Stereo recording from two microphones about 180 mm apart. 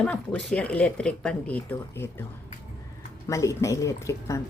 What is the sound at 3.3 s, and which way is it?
Speech, 15° left (ahead or behind).